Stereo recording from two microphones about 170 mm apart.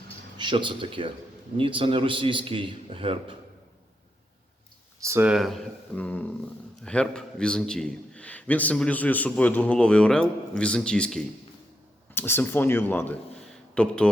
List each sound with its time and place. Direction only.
0.3 s a man's voice: 30° right (ahead or behind)
4.9 s speech: 15° right (ahead or behind)
5.3 s a man's voice: centre (ahead or behind)
6.0 s a sound: 10° left (ahead or behind)
6.8 s a man's voice: 5° left (ahead or behind)